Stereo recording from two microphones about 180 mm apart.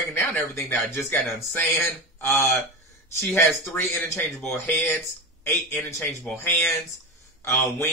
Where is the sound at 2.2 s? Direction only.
15° left (ahead or behind).